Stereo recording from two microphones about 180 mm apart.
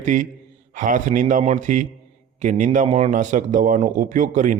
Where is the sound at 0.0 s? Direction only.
45° right (ahead or behind).